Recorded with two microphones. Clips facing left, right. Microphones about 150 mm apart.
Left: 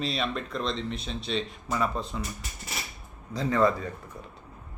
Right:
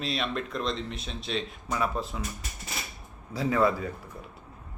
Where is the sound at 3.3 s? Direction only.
5° right (ahead or behind).